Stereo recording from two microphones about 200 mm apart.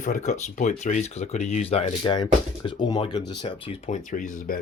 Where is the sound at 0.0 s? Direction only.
40° left (ahead or behind).